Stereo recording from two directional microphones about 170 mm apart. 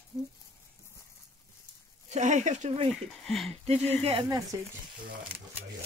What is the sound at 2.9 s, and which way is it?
Speech, centre (ahead or behind).